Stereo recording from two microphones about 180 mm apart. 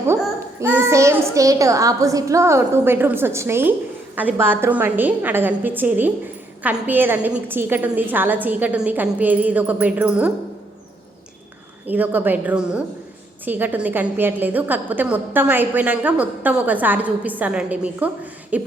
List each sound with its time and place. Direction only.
0.2 s a child's voice: 10° right (ahead or behind)
11.9 s a child's voice: 10° right (ahead or behind)